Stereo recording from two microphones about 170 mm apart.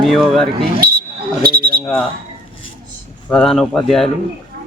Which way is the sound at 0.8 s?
60° right (ahead or behind).